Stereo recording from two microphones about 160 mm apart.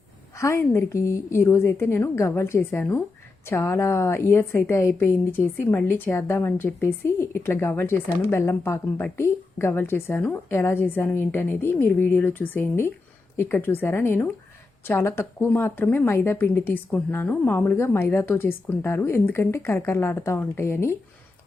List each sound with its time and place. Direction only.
0.3 s a woman's voice: 15° left (ahead or behind)